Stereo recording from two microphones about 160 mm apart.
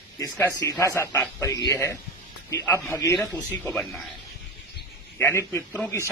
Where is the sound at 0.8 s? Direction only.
15° left (ahead or behind).